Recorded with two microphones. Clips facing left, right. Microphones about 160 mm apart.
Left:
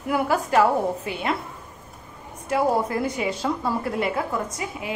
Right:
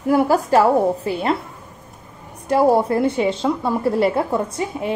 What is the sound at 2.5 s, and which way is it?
A woman's voice, 35° right (ahead or behind).